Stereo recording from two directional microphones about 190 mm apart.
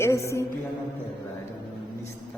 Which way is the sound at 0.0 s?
15° left (ahead or behind).